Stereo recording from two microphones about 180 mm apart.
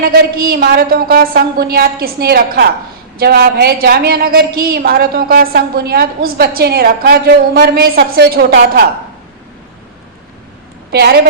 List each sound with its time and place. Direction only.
0.0 s a woman's voice: 55° right (ahead or behind)
10.9 s a woman's voice: 60° right (ahead or behind)